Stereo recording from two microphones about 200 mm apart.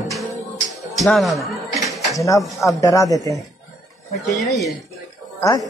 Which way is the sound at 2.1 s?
15° left (ahead or behind).